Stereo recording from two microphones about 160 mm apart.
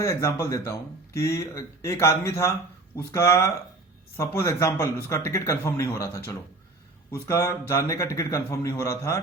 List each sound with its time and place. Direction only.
0.0 s speech: 20° left (ahead or behind)